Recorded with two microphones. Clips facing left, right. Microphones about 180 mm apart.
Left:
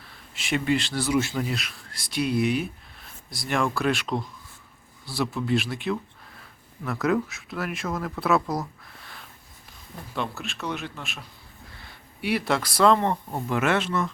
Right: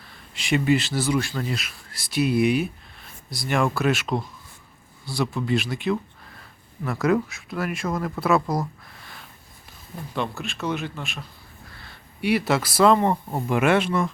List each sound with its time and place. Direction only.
0.0 s speech: centre (ahead or behind)
1.2 s speech: 20° left (ahead or behind)
1.5 s speech: centre (ahead or behind)
3.0 s speech: centre (ahead or behind)
10.2 s speech: centre (ahead or behind)
12.2 s speech: centre (ahead or behind)